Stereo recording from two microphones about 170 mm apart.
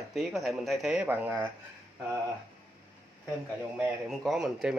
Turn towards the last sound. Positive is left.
turn(degrees=0)  # may be behind; listen again after turning